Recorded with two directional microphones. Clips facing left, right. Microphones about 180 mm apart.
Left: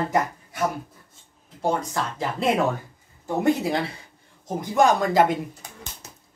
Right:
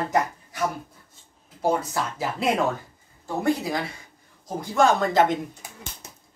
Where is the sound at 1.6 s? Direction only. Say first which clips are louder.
Right 1 dB; 5° right (ahead or behind).